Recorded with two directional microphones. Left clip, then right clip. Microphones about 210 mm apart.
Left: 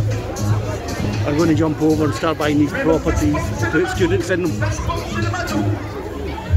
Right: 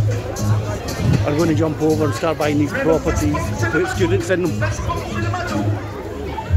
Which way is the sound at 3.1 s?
45° right (ahead or behind).